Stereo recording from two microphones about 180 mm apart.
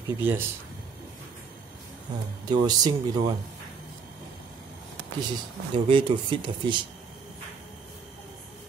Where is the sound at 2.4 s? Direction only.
25° right (ahead or behind).